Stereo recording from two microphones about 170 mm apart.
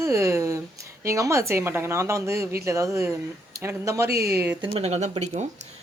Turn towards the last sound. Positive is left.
turn(degrees=-40)  # may be behind; listen again after turning